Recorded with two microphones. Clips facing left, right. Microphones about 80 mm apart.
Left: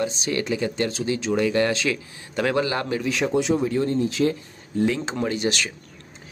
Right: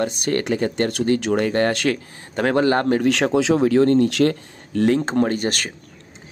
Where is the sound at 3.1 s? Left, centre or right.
Right.